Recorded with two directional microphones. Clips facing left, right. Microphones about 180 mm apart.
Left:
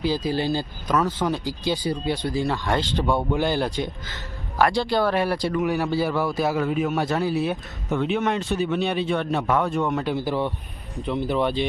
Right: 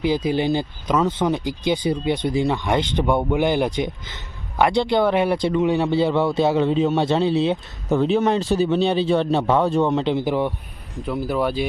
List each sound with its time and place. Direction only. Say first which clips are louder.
0.0 s speech: right 3 dB; 20° right (ahead or behind)
10.9 s speech: right 1 dB; centre (ahead or behind)